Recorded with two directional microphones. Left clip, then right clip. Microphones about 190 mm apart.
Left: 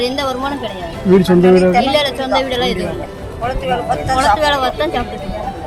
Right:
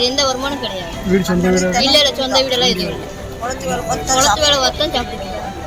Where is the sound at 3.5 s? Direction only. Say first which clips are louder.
Left 3 dB; 30° left (ahead or behind).